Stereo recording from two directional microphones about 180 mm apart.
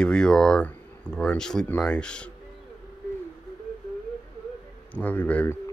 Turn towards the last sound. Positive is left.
turn(degrees=10)  # may be behind; listen again after turning